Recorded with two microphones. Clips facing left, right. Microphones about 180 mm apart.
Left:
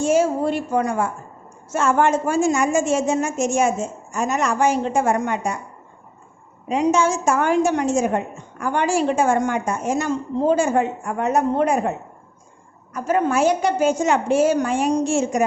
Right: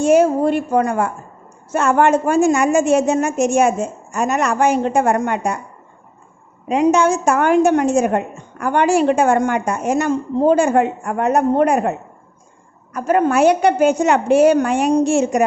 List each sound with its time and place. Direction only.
0.0 s a woman's voice: 60° right (ahead or behind)
6.7 s a woman's voice: 65° right (ahead or behind)